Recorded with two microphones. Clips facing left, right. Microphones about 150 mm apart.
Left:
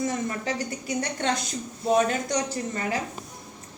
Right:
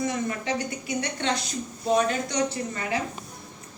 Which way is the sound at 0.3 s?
40° left (ahead or behind).